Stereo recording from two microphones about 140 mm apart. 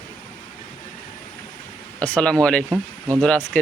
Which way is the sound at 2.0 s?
10° left (ahead or behind).